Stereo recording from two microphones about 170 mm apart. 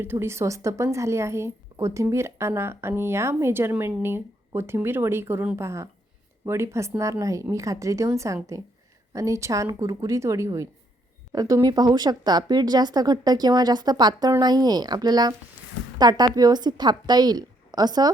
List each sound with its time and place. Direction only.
0.0 s a woman's voice: 15° right (ahead or behind)